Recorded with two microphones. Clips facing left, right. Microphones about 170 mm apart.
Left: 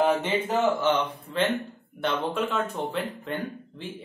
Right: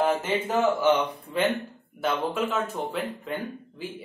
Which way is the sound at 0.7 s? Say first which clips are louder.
Right 2 dB; 10° right (ahead or behind).